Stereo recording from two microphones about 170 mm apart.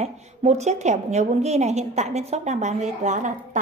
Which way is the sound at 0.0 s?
40° right (ahead or behind).